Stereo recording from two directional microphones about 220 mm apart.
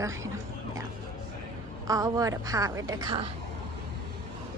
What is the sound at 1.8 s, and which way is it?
A woman's voice, 15° right (ahead or behind).